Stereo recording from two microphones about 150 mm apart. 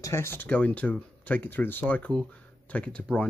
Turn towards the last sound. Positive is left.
turn(degrees=5)  # may be behind; listen again after turning